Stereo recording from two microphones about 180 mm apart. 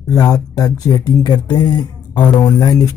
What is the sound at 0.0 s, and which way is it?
Speech, 20° left (ahead or behind).